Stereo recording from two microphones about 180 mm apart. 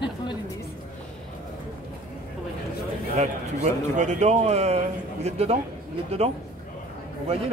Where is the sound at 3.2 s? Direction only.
40° right (ahead or behind).